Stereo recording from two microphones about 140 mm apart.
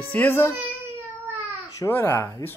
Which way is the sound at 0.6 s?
15° right (ahead or behind).